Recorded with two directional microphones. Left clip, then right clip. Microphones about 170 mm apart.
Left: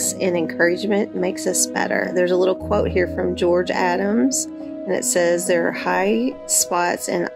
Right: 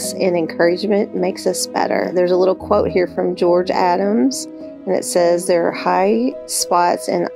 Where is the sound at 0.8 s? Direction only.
15° right (ahead or behind).